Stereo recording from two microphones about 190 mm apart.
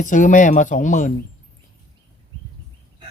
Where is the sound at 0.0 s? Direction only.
40° left (ahead or behind).